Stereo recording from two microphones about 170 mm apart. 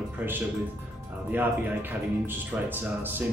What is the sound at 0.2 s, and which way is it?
Speech, 10° right (ahead or behind).